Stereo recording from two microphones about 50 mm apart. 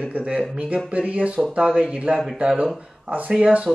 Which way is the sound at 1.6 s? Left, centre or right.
Centre.